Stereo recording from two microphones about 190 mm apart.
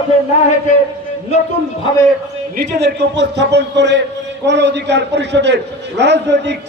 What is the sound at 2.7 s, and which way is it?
Speech, 60° right (ahead or behind).